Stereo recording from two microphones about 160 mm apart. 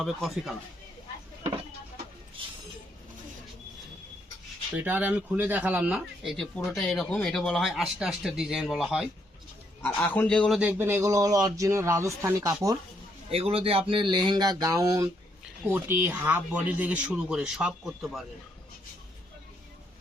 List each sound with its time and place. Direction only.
0.0 s speech: centre (ahead or behind)
4.8 s speech: 10° right (ahead or behind)
9.8 s a man's voice: 10° left (ahead or behind)
10.6 s speech: 15° right (ahead or behind)
13.3 s speech: 40° right (ahead or behind); by 18.3 s centre (ahead or behind)